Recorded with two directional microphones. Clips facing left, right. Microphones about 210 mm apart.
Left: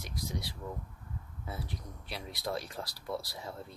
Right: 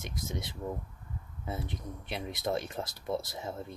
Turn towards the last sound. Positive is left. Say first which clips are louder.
# right 4 dB
turn(degrees=-20)  # may be behind; listen again after turning